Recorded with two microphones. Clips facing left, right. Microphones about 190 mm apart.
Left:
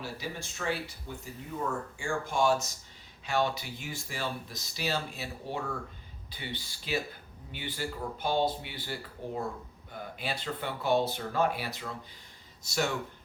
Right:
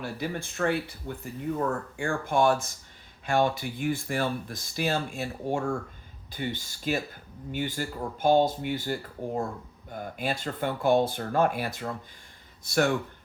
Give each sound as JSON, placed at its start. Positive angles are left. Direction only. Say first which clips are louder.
{"t": 0.0, "sound": "speech", "louder": "right 6 dB", "side_deg": -55}